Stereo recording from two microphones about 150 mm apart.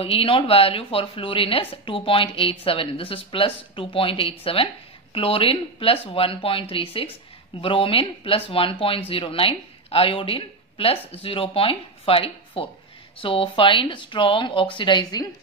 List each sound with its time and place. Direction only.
0.0 s speech: 40° left (ahead or behind)